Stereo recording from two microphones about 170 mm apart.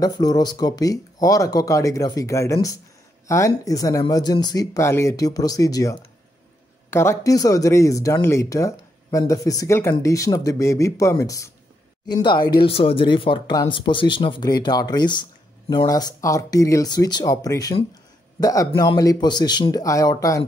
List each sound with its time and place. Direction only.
0.0 s speech: 20° left (ahead or behind)